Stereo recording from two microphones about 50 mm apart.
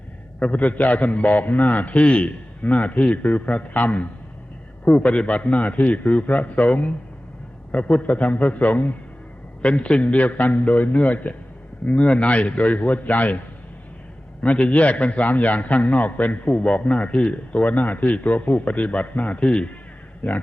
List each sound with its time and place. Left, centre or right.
0.3 s a man's voice: left
14.4 s a man's voice: left
20.2 s a man's voice: left